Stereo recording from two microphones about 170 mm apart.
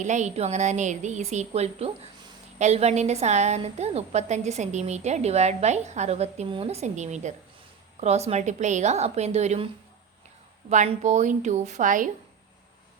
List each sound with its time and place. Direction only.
0.0 s a woman's voice: 45° right (ahead or behind)
10.7 s a woman's voice: 45° right (ahead or behind)